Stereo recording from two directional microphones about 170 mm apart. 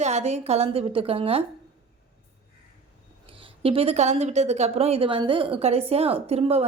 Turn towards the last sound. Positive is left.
turn(degrees=-35)  # may be behind; listen again after turning